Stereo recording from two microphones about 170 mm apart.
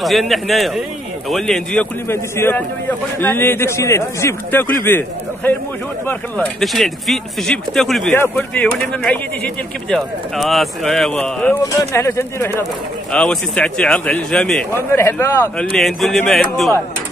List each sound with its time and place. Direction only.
0.0 s a man's voice: centre (ahead or behind)
11.6 s a man's voice: 15° left (ahead or behind)
15.7 s speech: centre (ahead or behind)